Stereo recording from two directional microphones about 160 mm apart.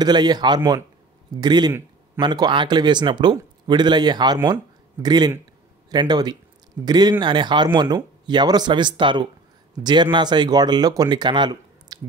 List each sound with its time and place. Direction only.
0.0 s speech: 25° right (ahead or behind)